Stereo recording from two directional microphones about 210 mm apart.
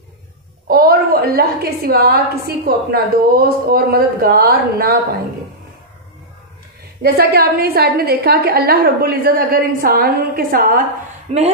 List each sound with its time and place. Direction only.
0.7 s a woman's voice: 45° right (ahead or behind)
7.0 s a woman's voice: 45° right (ahead or behind)